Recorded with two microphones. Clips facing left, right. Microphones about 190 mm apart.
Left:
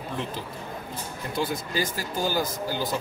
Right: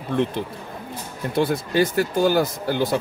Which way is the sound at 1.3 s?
60° right (ahead or behind).